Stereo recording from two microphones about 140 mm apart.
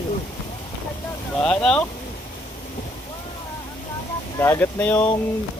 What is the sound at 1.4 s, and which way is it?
Speech, 5° left (ahead or behind).